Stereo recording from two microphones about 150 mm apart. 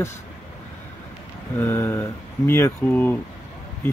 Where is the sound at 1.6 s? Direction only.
15° left (ahead or behind).